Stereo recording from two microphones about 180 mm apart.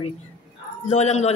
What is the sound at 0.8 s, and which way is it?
Speech, 40° left (ahead or behind).